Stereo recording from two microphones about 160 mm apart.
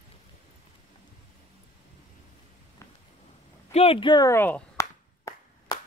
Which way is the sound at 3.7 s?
40° left (ahead or behind).